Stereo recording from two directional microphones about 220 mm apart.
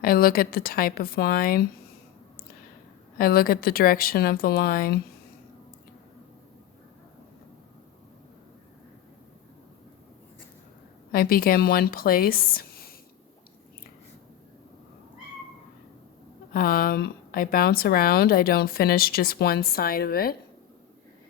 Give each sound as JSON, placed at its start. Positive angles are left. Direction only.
{"t": 0.0, "sound": "a woman's voice", "side_deg": 40}
{"t": 3.2, "sound": "speech", "side_deg": 40}
{"t": 11.1, "sound": "speech", "side_deg": 40}
{"t": 16.5, "sound": "speech", "side_deg": 40}